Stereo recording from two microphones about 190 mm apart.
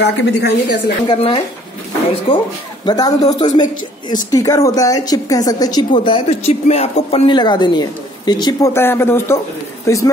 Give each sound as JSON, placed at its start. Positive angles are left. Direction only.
{"t": 0.0, "sound": "a woman's voice", "side_deg": 65}
{"t": 1.0, "sound": "speech", "side_deg": 30}
{"t": 3.6, "sound": "speech", "side_deg": 45}
{"t": 4.3, "sound": "speech", "side_deg": 20}